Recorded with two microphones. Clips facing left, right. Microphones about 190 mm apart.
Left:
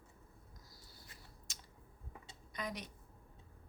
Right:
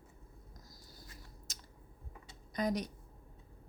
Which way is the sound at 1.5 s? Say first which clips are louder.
Right 3 dB; 40° right (ahead or behind).